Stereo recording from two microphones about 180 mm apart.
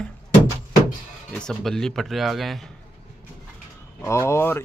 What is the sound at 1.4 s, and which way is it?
Speech, centre (ahead or behind).